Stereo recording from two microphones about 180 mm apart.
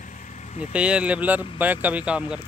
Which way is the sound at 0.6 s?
5° right (ahead or behind).